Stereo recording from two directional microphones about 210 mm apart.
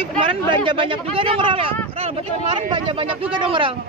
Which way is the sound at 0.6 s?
25° right (ahead or behind).